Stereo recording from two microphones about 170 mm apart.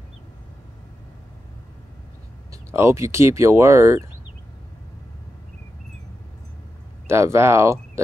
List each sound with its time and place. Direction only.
2.5 s speech: 15° right (ahead or behind)
7.1 s speech: 15° right (ahead or behind)